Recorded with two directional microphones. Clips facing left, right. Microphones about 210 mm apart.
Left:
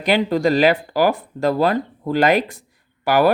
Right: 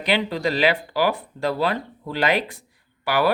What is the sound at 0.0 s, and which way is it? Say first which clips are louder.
Speech: left 5 dB; 45° left (ahead or behind).